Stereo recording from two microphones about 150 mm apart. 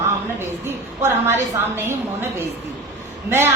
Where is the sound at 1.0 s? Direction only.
15° right (ahead or behind).